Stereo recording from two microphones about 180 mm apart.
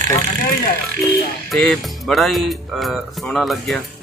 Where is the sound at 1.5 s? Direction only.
Centre (ahead or behind).